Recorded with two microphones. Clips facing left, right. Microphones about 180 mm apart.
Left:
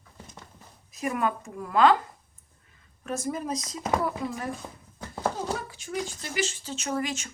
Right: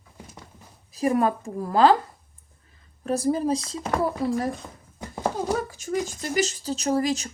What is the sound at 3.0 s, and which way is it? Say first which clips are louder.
Speech: right 8 dB; 35° right (ahead or behind).